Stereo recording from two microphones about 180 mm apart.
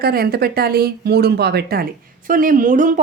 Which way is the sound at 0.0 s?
60° right (ahead or behind).